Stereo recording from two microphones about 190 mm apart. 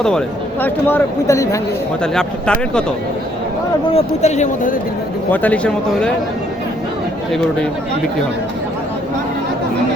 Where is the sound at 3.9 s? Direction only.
35° left (ahead or behind).